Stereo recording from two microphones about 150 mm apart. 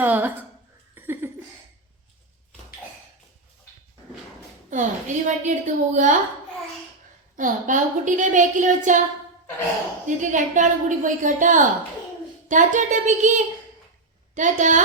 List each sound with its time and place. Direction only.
0.0 s speech: 10° right (ahead or behind)
0.9 s laughter: 15° right (ahead or behind)
4.7 s a woman's voice: 55° right (ahead or behind)
7.3 s a woman's voice: 60° right (ahead or behind)
10.1 s a woman's voice: 55° right (ahead or behind)